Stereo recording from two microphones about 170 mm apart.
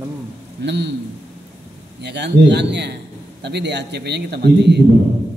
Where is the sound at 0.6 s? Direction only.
85° right.